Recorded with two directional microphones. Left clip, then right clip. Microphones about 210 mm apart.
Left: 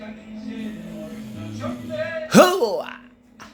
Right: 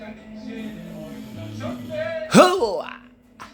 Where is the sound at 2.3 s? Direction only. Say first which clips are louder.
Even; centre (ahead or behind).